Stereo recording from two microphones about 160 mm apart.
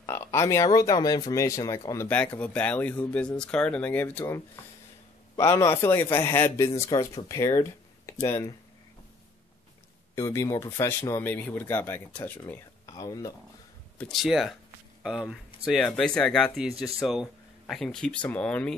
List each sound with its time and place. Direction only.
0.0 s a sound: 15° left (ahead or behind)
0.7 s speech: 25° left (ahead or behind)
2.0 s speech: 10° left (ahead or behind)
8.1 s a sound: 20° left (ahead or behind)
10.1 s speech: 20° left (ahead or behind)
13.9 s speech: centre (ahead or behind)